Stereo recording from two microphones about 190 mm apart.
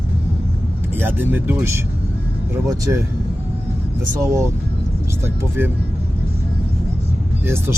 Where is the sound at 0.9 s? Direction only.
10° right (ahead or behind).